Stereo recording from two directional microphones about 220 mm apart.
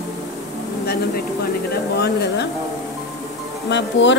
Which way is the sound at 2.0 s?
50° left (ahead or behind).